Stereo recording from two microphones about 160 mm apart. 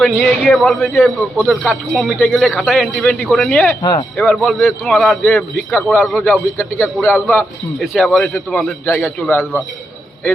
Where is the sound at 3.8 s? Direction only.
25° left (ahead or behind).